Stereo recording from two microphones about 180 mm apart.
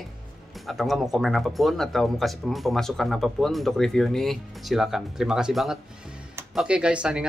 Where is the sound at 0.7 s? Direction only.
Centre (ahead or behind).